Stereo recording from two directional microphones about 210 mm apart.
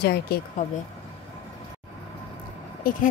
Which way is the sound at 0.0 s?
50° left (ahead or behind).